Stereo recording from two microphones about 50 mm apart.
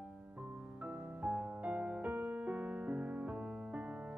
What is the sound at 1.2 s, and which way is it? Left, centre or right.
Music, right.